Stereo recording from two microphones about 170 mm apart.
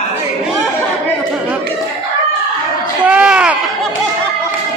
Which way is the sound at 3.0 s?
5° right (ahead or behind).